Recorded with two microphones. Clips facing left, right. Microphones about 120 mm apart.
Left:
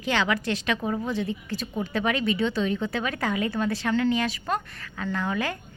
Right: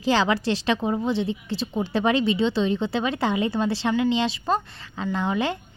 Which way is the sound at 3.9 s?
20° right (ahead or behind).